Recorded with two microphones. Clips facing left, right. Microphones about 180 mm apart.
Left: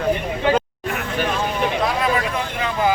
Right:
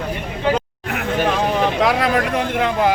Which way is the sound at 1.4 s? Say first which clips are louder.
Right 4 dB; 75° right (ahead or behind).